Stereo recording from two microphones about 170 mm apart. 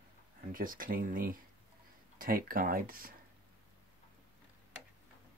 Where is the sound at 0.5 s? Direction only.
55° right (ahead or behind).